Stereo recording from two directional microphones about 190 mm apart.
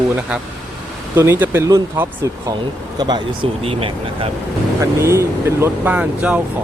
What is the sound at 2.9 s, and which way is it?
Speech, 25° right (ahead or behind).